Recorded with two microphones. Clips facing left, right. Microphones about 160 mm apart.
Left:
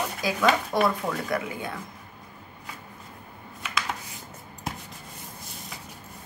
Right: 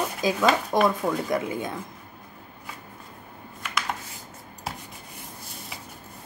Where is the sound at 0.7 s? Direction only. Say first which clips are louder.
Right 2 dB; 20° right (ahead or behind).